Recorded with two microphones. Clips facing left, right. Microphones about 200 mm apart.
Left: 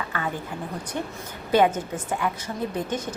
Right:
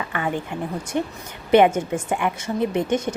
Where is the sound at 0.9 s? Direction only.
20° right (ahead or behind).